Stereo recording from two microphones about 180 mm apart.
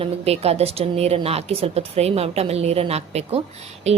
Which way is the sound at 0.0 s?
35° right (ahead or behind).